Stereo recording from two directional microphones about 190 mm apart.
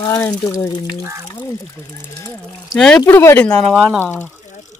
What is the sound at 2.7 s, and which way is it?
Speech, 5° left (ahead or behind).